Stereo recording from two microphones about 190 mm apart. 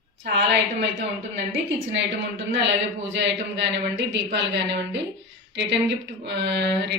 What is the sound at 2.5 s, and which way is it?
Speech, 70° right (ahead or behind).